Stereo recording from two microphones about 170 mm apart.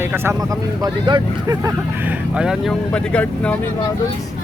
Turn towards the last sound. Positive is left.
turn(degrees=5)  # may be behind; listen again after turning